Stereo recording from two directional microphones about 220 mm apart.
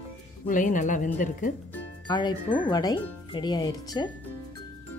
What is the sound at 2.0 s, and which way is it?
Speech, 20° left (ahead or behind).